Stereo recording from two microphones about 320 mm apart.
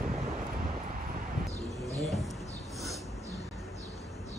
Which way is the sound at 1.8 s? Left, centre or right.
Centre.